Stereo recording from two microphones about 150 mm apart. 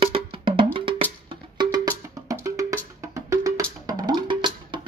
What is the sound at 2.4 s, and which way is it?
Music, 20° right (ahead or behind).